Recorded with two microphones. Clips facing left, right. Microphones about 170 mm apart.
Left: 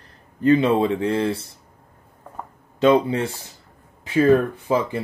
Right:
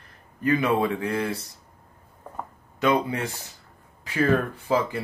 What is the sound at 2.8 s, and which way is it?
Speech, 25° left (ahead or behind).